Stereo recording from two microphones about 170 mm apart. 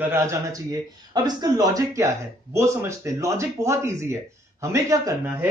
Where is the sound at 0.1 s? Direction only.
15° right (ahead or behind).